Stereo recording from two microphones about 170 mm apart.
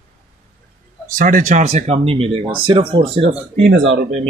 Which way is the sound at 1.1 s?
55° right (ahead or behind).